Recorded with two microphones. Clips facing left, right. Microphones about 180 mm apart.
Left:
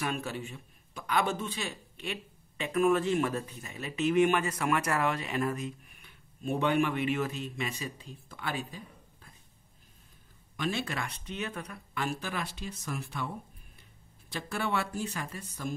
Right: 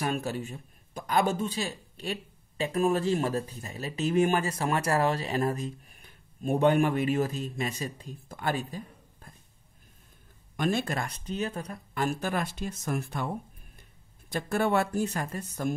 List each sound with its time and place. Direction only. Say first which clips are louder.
0.0 s a man's voice: right 4 dB; 40° right (ahead or behind)
10.5 s speech: right 5 dB; 50° right (ahead or behind)
14.3 s speech: right 6 dB; 45° right (ahead or behind)